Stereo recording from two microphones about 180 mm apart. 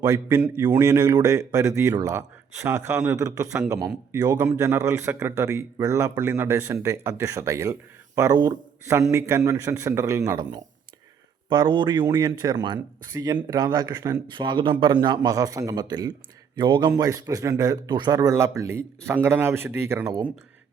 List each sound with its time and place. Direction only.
0.0 s a man's voice: 20° right (ahead or behind)